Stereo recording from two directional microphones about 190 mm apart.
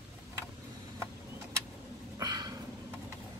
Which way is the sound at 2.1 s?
20° right (ahead or behind).